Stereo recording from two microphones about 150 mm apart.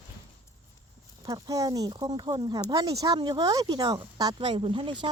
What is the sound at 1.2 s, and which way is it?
Speech, 25° right (ahead or behind).